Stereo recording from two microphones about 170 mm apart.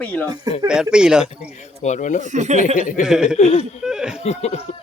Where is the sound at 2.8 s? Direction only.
50° left (ahead or behind).